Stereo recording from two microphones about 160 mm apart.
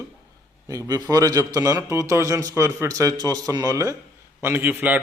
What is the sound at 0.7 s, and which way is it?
A man's voice, 20° right (ahead or behind).